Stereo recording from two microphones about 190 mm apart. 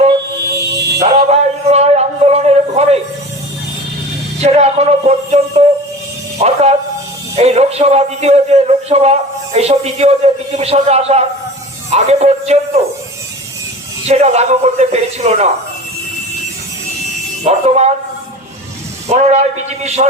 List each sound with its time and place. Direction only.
0.5 s music: 60° right (ahead or behind)
1.0 s a sound: 35° right (ahead or behind)
4.4 s a man's voice: 35° right (ahead or behind)
6.4 s a sound: 35° right (ahead or behind)
7.3 s a man's voice: 35° right (ahead or behind)
14.1 s a man's voice: 35° right (ahead or behind)
17.4 s a man's voice: 35° right (ahead or behind)
19.1 s a man's voice: 35° right (ahead or behind)